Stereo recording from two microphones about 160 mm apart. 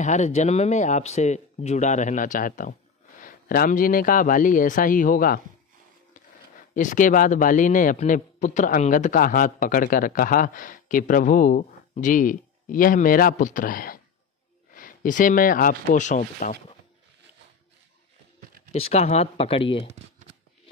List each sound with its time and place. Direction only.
0.0 s a man's voice: 45° left (ahead or behind)
6.7 s a man's voice: 50° left (ahead or behind)
18.7 s speech: 40° left (ahead or behind)